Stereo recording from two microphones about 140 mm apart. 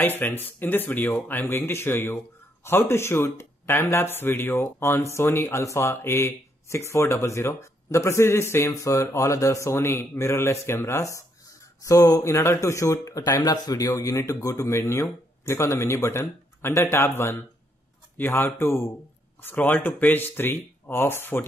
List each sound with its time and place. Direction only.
0.0 s speech: 15° left (ahead or behind)